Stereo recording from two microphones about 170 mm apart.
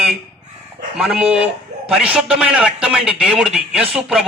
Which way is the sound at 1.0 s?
5° right (ahead or behind).